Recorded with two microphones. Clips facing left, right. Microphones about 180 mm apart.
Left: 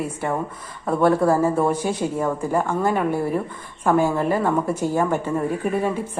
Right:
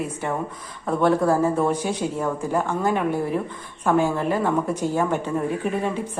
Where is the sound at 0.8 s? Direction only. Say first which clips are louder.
Left 2 dB; 10° left (ahead or behind).